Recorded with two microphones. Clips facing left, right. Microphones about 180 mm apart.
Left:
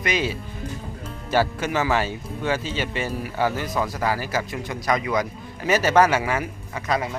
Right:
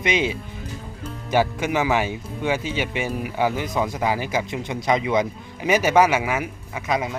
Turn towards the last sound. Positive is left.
turn(degrees=-10)  # may be behind; listen again after turning